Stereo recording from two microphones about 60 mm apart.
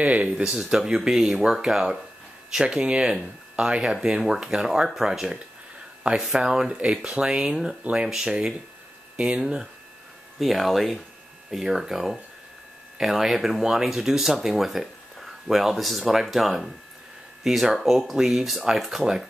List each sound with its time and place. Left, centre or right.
0.0 s speech: right
0.4 s speech: centre
9.4 s speech: centre